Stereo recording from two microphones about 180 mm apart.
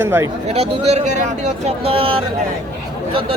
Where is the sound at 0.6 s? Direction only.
35° right (ahead or behind).